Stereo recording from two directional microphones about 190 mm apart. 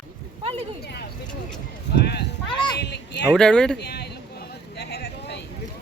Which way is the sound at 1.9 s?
60° left (ahead or behind).